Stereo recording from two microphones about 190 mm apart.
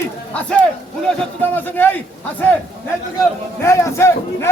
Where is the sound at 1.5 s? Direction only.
10° left (ahead or behind).